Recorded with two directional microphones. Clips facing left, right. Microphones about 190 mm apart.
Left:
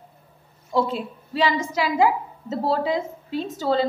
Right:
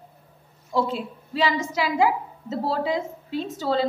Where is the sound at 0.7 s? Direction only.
45° left (ahead or behind).